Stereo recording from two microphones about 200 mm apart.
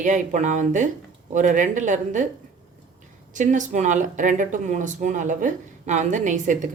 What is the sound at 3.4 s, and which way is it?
Speech, 40° right (ahead or behind).